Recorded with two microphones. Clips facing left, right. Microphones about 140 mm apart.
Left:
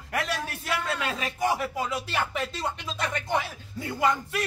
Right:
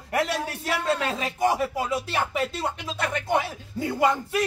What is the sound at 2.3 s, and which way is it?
Speech, 10° right (ahead or behind).